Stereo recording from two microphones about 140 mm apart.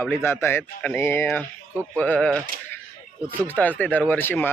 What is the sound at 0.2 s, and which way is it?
A man's voice, 15° left (ahead or behind).